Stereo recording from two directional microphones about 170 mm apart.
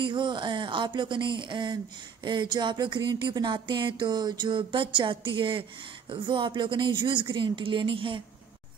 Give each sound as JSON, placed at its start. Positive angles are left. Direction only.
{"t": 0.0, "sound": "speech", "side_deg": -30}